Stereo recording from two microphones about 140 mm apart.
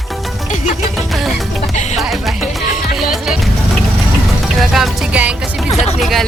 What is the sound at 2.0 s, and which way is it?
Music, centre (ahead or behind).